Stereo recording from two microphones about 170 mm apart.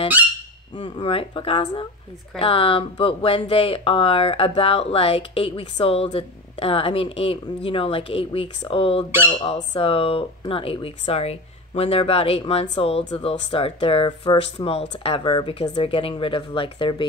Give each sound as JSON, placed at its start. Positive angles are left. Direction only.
{"t": 0.7, "sound": "speech", "side_deg": 30}